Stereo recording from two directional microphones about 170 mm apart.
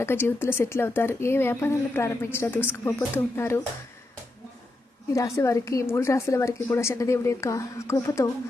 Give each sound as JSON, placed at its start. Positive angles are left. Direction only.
{"t": 0.0, "sound": "speech", "side_deg": 15}
{"t": 5.1, "sound": "speech", "side_deg": 20}